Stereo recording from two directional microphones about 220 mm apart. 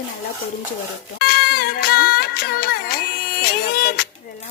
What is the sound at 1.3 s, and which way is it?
Music, 45° left (ahead or behind).